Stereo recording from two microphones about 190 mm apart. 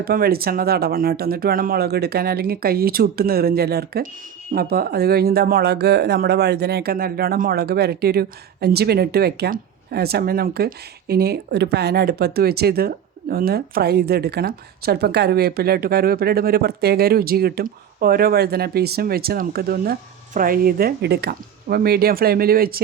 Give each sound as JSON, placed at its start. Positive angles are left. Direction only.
{"t": 0.0, "sound": "speech", "side_deg": -50}